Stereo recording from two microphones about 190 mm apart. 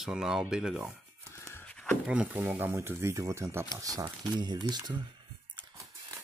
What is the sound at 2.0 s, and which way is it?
Speech, 5° right (ahead or behind).